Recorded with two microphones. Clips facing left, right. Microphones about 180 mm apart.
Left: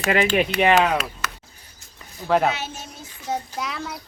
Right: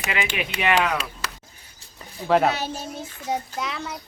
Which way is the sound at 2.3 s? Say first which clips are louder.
Right 1 dB; centre (ahead or behind).